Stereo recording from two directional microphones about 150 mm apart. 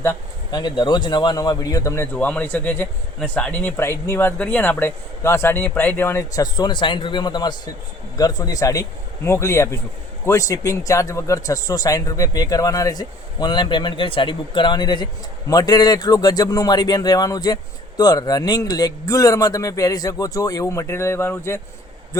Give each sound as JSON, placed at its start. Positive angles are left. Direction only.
{"t": 0.5, "sound": "a man's voice", "side_deg": 30}
{"t": 2.1, "sound": "a man's voice", "side_deg": 10}